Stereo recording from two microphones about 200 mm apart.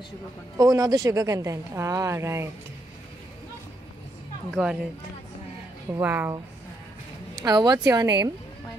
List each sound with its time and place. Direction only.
0.6 s a woman's voice: 15° right (ahead or behind)
4.6 s speech: 5° right (ahead or behind)
5.9 s a woman's voice: 10° right (ahead or behind)